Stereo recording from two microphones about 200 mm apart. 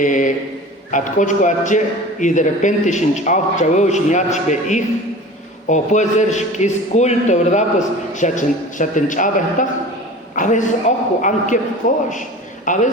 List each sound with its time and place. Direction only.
0.0 s a man's voice: 40° left (ahead or behind)